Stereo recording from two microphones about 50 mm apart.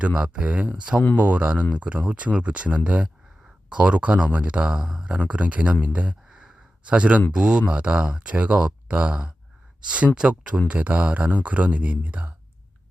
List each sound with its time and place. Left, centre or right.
0.2 s speech: right
5.3 s speech: right
5.8 s a sound: right
7.3 s speech: centre